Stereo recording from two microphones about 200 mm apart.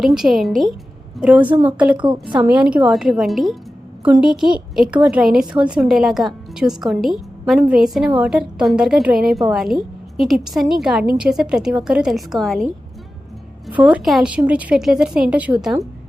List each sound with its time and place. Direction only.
0.0 s a woman's voice: centre (ahead or behind)
2.0 s a woman's voice: 25° right (ahead or behind)
2.5 s a woman's voice: 5° right (ahead or behind)
13.7 s a woman's voice: 5° right (ahead or behind)